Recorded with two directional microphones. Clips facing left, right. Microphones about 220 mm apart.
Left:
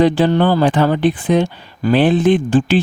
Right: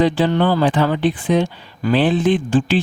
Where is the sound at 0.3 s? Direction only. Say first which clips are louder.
Left 2 dB; 40° left (ahead or behind).